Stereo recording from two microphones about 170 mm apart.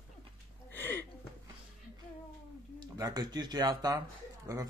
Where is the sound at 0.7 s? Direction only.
15° left (ahead or behind).